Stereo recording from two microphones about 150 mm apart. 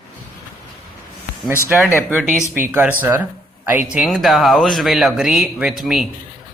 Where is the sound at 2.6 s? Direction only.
15° right (ahead or behind).